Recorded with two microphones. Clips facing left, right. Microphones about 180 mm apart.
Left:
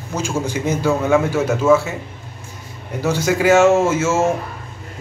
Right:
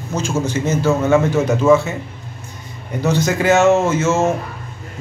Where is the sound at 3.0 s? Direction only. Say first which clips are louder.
Even; 10° left (ahead or behind).